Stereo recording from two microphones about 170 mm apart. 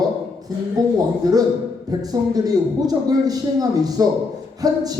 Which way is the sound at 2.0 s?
20° right (ahead or behind).